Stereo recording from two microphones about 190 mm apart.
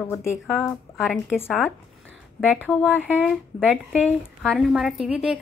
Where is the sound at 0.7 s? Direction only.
Centre (ahead or behind).